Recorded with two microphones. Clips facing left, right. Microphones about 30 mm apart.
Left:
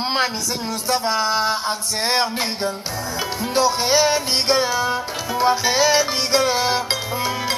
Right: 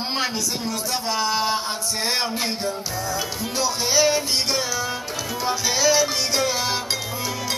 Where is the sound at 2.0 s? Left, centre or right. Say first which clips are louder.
Left 4 dB; left.